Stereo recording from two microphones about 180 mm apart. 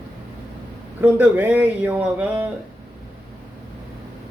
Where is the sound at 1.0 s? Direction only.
10° right (ahead or behind).